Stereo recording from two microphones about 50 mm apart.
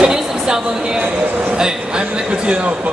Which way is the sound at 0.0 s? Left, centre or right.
Centre.